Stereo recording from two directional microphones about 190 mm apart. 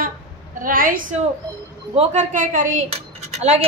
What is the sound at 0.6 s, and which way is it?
A woman's voice, 45° right (ahead or behind).